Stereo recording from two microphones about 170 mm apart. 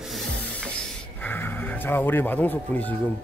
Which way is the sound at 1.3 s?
10° left (ahead or behind).